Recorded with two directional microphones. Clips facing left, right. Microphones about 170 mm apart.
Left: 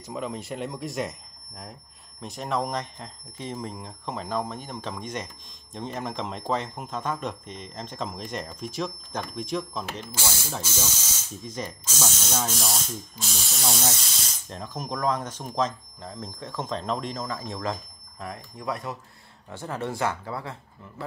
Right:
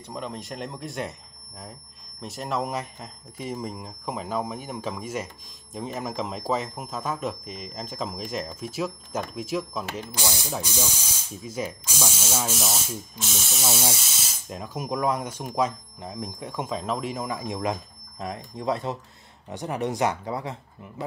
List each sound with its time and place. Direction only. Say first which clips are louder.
0.1 s speech: left 2 dB; centre (ahead or behind)
2.2 s speech: even; centre (ahead or behind)
10.1 s speech: right 2 dB; 15° right (ahead or behind)